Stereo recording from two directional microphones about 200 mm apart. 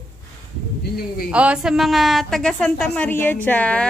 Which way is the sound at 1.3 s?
5° right (ahead or behind).